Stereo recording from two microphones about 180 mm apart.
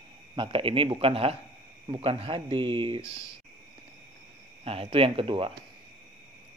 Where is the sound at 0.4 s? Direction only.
30° right (ahead or behind).